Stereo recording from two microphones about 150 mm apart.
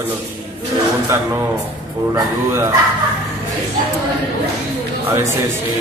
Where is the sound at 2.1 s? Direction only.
20° right (ahead or behind).